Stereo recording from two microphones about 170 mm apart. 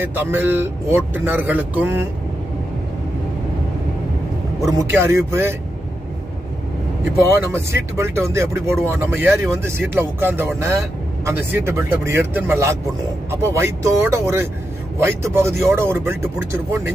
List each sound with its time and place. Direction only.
0.0 s speech: 10° right (ahead or behind)
4.6 s speech: 15° right (ahead or behind)
7.5 s speech: 15° right (ahead or behind)